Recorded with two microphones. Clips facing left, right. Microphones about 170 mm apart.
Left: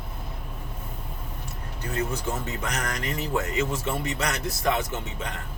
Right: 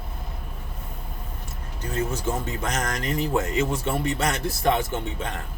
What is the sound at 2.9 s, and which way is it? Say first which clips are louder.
A man's voice: right 5 dB; 25° right (ahead or behind).